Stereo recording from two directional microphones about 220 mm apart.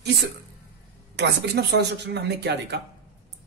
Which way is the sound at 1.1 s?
50° right (ahead or behind).